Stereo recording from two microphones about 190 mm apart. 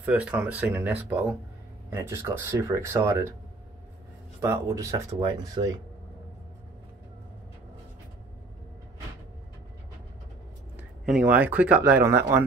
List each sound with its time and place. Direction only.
0.0 s speech: 5° right (ahead or behind)
4.4 s speech: 15° right (ahead or behind)
10.8 s speech: 5° right (ahead or behind)